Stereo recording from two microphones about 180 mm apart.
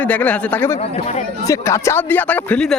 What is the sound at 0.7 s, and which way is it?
Speech, 35° left (ahead or behind).